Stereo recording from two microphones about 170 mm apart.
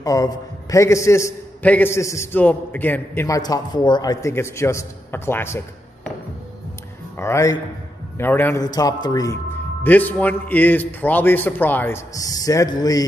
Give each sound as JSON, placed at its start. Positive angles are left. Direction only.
{"t": 0.0, "sound": "a man's voice", "side_deg": 20}
{"t": 7.2, "sound": "a man's voice", "side_deg": 15}
{"t": 9.8, "sound": "a man's voice", "side_deg": 10}